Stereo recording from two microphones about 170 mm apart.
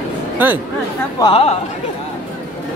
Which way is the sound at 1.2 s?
30° left (ahead or behind).